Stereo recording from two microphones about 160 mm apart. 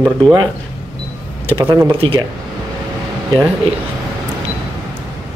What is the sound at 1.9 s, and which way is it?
Speech, 35° right (ahead or behind).